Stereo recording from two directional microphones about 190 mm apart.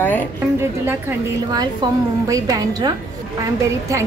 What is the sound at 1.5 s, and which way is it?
A woman's voice, 20° right (ahead or behind).